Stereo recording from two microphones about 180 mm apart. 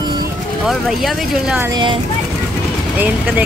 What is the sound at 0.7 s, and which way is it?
Speech, centre (ahead or behind).